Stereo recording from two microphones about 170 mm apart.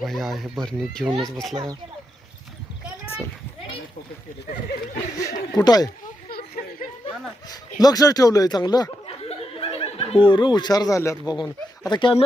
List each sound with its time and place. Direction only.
0.0 s speech: centre (ahead or behind)
5.1 s speech: 20° left (ahead or behind)
7.8 s speech: 20° left (ahead or behind)